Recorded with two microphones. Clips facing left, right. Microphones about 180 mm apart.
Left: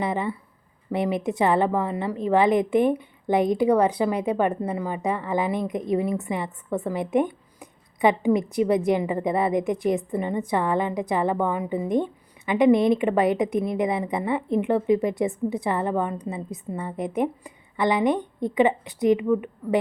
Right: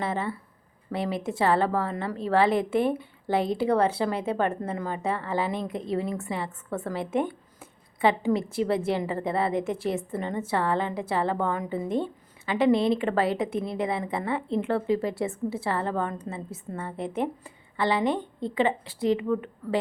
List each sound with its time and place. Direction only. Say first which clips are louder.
0.0 s a woman's voice: left 3 dB; 15° left (ahead or behind)